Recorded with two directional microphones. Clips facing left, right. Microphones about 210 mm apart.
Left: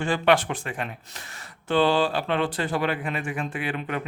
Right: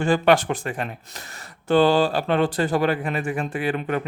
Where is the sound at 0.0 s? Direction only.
45° right (ahead or behind).